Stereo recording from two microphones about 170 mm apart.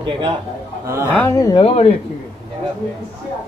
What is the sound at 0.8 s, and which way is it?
Speech, 15° right (ahead or behind).